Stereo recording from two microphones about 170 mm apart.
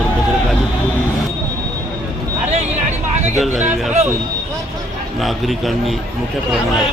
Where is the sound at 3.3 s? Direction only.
Centre (ahead or behind).